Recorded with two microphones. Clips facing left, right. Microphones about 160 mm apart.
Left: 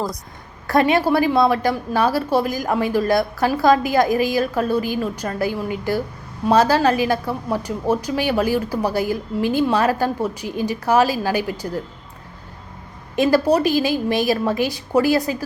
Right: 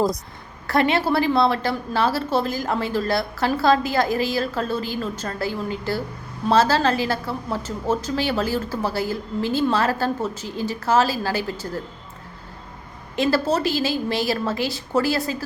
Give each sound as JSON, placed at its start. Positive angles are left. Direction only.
{"t": 0.7, "sound": "a woman's voice", "side_deg": 15}
{"t": 13.1, "sound": "a woman's voice", "side_deg": 15}